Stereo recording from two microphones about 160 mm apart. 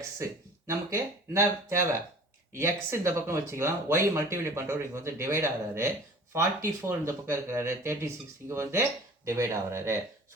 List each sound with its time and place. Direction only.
0.7 s speech: 15° right (ahead or behind)